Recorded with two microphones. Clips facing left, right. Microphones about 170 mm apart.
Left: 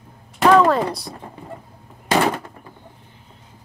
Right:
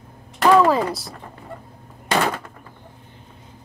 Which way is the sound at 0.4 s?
5° right (ahead or behind).